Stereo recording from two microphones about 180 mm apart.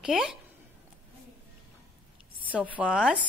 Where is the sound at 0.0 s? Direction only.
5° right (ahead or behind).